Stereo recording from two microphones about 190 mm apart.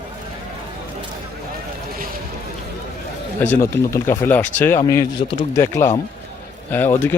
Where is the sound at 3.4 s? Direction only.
10° left (ahead or behind).